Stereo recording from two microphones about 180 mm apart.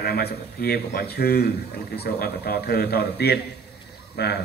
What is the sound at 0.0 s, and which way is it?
A man's voice, 60° left (ahead or behind).